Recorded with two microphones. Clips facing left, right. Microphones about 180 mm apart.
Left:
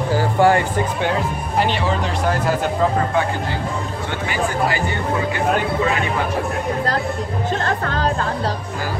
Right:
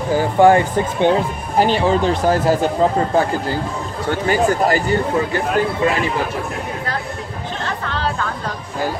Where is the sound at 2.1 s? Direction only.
35° right (ahead or behind).